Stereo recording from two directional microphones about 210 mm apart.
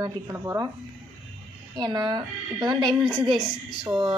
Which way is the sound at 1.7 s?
20° right (ahead or behind).